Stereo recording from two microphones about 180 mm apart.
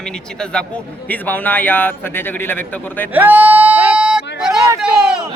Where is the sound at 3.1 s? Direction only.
10° right (ahead or behind).